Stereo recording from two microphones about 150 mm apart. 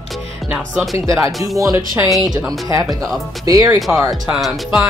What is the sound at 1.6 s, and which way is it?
Speech, 20° right (ahead or behind).